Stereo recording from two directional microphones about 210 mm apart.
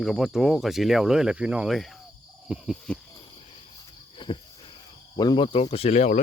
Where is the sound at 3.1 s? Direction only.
25° left (ahead or behind).